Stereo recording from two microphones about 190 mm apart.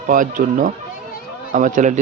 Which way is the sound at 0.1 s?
45° right (ahead or behind).